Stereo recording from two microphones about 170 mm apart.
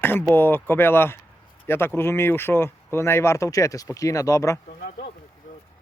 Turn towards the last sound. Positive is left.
turn(degrees=65)  # may be behind; listen again after turning